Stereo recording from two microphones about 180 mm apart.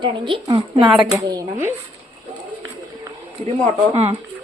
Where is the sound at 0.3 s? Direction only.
30° right (ahead or behind).